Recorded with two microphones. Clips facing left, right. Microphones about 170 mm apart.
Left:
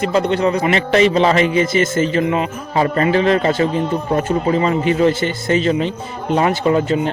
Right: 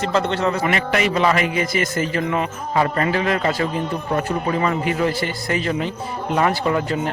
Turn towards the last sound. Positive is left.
turn(degrees=20)  # may be behind; listen again after turning